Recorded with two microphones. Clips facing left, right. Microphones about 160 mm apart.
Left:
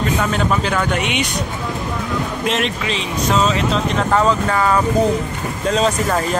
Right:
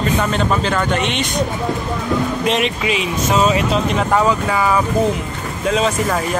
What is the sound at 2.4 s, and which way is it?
Speech, centre (ahead or behind).